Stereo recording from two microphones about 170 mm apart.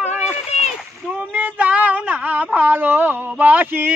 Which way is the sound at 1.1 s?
10° right (ahead or behind).